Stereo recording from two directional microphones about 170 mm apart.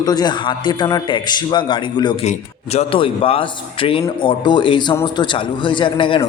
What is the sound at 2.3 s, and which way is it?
A man's voice, 40° left (ahead or behind).